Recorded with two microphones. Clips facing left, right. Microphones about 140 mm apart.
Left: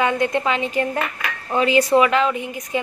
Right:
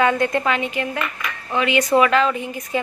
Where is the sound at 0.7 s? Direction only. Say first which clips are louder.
Left 3 dB; 40° left (ahead or behind).